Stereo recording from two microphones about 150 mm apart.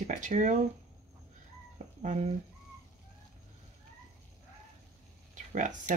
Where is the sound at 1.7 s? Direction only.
55° right (ahead or behind).